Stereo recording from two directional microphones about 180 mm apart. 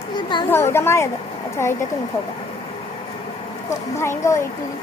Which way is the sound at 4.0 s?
15° left (ahead or behind).